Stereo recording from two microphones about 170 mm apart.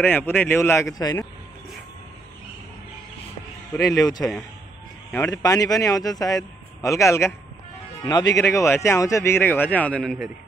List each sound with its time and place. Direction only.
0.0 s a man's voice: 10° left (ahead or behind)
3.9 s a man's voice: 20° left (ahead or behind)